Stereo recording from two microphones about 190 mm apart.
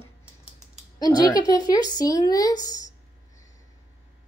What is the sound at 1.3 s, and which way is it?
Speech, 25° right (ahead or behind).